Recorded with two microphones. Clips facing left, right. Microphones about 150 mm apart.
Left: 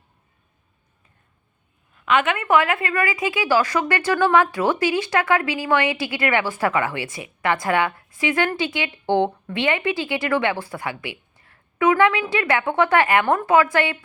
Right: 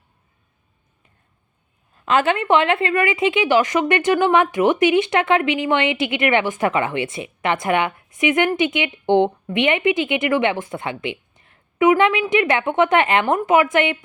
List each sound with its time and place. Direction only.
2.0 s a woman's voice: 35° right (ahead or behind); by 14.0 s 20° right (ahead or behind)